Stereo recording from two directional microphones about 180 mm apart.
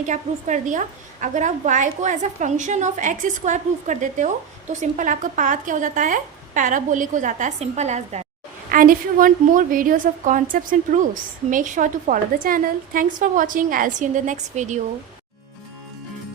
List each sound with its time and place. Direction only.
0.0 s a woman's voice: 40° right (ahead or behind)
8.7 s a woman's voice: 50° right (ahead or behind)